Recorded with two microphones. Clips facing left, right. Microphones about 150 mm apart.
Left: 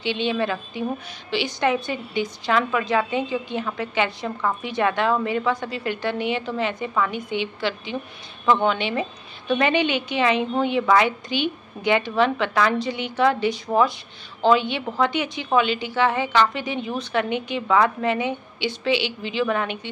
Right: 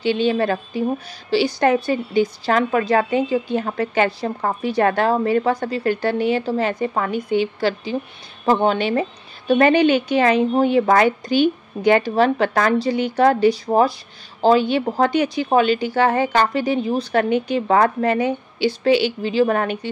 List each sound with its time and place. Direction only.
0.0 s speech: 40° right (ahead or behind)